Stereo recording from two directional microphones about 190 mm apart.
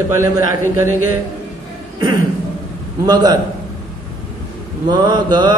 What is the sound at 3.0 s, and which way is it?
Speech, 20° right (ahead or behind).